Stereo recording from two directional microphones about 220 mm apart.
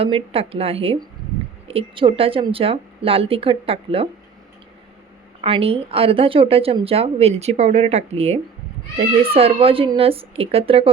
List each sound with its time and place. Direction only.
0.0 s a woman's voice: 25° right (ahead or behind)
5.4 s a woman's voice: 25° right (ahead or behind)